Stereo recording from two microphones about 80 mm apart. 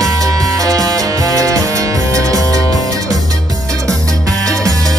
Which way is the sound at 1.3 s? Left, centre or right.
Right.